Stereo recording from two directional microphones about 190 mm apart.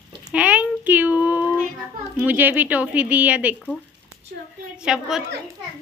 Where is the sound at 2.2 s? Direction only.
10° right (ahead or behind).